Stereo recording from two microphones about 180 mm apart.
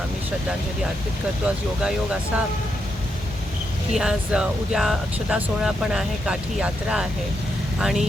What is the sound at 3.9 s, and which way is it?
Speech, 5° right (ahead or behind).